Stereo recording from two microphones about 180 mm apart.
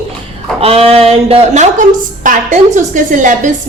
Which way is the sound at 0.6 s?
35° right (ahead or behind).